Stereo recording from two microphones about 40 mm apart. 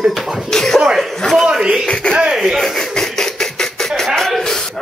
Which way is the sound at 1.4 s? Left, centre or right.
Centre.